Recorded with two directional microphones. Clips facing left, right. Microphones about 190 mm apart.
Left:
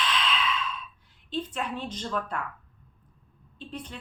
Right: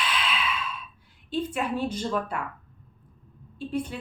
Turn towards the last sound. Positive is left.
turn(degrees=-10)  # may be behind; listen again after turning